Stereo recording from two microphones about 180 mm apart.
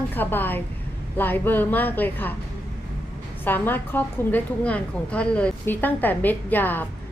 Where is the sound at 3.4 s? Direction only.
10° left (ahead or behind).